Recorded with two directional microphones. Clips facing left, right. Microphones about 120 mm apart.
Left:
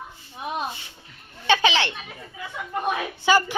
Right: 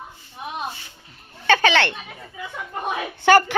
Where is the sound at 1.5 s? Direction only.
60° right (ahead or behind).